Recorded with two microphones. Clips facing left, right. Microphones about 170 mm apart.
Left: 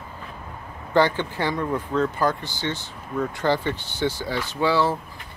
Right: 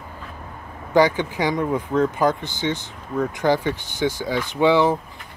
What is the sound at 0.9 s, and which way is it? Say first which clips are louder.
Speech: right 3 dB; 15° right (ahead or behind).